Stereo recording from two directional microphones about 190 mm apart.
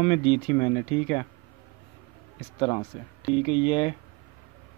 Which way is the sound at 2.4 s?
30° left (ahead or behind).